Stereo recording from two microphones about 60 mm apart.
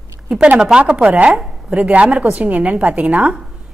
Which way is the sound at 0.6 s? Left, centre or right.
Centre.